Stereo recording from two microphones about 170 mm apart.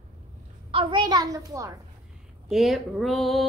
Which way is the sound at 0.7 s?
30° right (ahead or behind).